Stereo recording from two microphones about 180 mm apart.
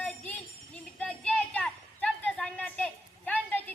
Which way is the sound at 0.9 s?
5° left (ahead or behind).